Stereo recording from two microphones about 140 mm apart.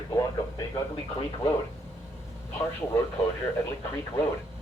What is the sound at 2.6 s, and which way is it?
Speech, 20° left (ahead or behind).